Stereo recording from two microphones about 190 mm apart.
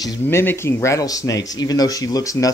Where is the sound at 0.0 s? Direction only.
15° left (ahead or behind).